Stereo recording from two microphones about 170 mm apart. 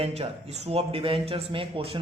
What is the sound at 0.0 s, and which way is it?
Speech, 40° right (ahead or behind).